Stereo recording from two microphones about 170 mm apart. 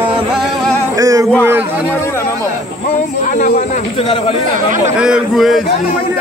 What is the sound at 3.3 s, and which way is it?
Speech, 45° left (ahead or behind).